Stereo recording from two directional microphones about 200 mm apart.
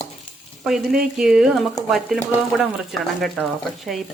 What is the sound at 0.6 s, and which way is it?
Speech, centre (ahead or behind).